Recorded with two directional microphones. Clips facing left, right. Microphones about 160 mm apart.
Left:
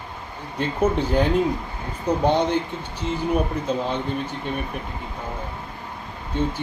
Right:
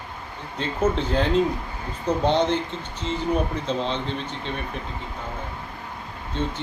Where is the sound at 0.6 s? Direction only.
10° left (ahead or behind).